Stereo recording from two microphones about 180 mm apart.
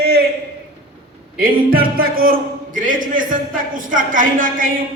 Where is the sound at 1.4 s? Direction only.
55° right (ahead or behind).